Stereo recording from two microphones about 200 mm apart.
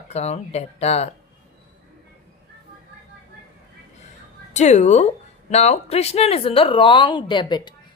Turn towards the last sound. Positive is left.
turn(degrees=20)  # may be behind; listen again after turning